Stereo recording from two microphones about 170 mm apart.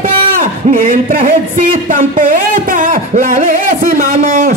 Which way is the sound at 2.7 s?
55° right (ahead or behind).